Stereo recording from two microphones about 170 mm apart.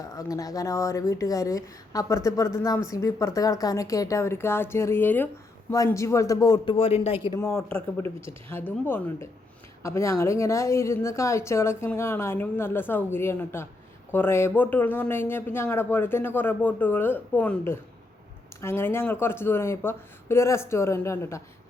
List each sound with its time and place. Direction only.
0.0 s speech: 20° left (ahead or behind)
6.7 s a man's voice: 35° left (ahead or behind)
7.3 s speech: 15° left (ahead or behind)